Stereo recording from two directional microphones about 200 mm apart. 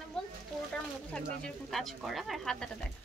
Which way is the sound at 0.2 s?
5° left (ahead or behind).